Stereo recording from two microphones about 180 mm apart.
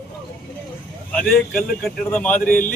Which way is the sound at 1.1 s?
5° left (ahead or behind).